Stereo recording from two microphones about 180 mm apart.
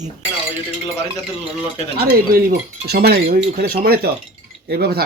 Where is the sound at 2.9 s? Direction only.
60° right (ahead or behind).